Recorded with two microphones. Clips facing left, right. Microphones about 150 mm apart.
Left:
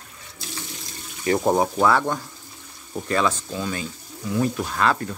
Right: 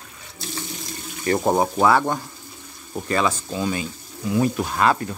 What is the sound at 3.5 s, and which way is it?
Speech, 15° right (ahead or behind).